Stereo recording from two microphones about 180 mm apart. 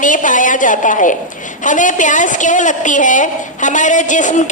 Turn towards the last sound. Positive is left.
turn(degrees=45)  # may be behind; listen again after turning